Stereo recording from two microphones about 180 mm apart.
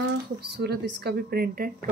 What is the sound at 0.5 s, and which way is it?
Speech, 65° right (ahead or behind).